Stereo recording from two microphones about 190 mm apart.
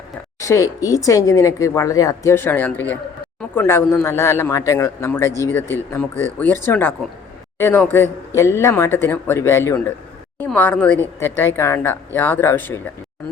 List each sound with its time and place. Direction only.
0.3 s speech: 15° left (ahead or behind)